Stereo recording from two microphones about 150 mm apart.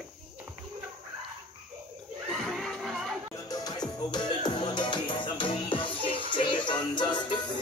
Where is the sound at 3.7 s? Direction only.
30° left (ahead or behind).